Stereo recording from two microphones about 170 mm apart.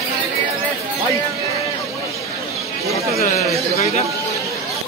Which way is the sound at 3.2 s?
40° left (ahead or behind).